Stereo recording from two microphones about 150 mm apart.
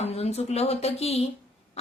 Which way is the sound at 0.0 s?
45° left (ahead or behind).